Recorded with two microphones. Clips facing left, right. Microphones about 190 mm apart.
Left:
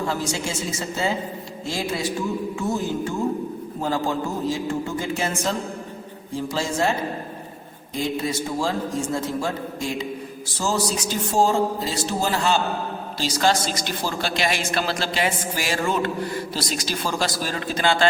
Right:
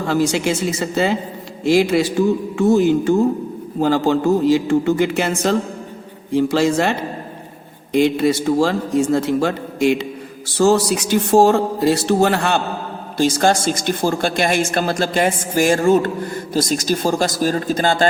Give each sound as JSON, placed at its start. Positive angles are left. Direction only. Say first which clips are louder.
{"t": 0.0, "sound": "a man's voice", "louder": "right 8 dB", "side_deg": -70}
{"t": 7.9, "sound": "a man's voice", "louder": "right 10 dB", "side_deg": -70}